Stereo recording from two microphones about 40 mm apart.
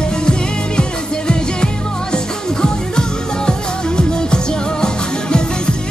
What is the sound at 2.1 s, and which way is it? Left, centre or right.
Music, centre.